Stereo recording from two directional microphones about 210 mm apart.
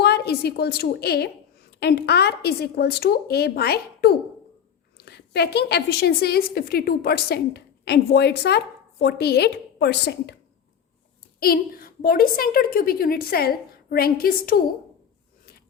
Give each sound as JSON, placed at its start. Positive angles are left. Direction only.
{"t": 0.0, "sound": "a woman's voice", "side_deg": 50}
{"t": 11.3, "sound": "a woman's voice", "side_deg": 45}